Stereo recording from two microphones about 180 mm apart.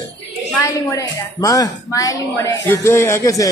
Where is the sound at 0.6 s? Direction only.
15° left (ahead or behind).